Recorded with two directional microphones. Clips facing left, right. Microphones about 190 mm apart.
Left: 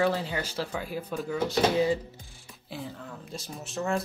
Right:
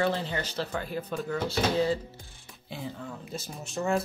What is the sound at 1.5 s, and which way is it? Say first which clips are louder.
Speech: left 2 dB; 15° left (ahead or behind).